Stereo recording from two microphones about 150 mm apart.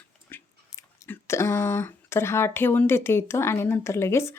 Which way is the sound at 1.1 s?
20° left (ahead or behind).